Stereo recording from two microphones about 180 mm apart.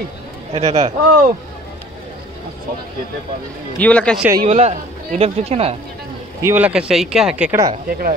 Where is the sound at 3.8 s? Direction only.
5° left (ahead or behind).